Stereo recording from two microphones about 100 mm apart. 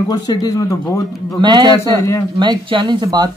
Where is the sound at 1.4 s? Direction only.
50° right (ahead or behind).